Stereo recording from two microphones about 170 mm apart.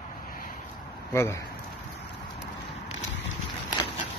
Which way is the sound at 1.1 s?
15° left (ahead or behind).